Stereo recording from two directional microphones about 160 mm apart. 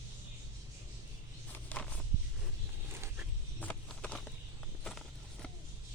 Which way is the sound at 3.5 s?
10° left (ahead or behind).